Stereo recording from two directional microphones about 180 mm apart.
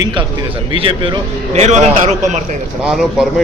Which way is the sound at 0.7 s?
30° right (ahead or behind).